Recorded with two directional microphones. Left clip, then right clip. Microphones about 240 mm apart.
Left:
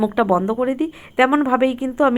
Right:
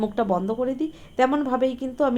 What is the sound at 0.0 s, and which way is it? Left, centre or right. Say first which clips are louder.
A woman's voice: left 6 dB; left.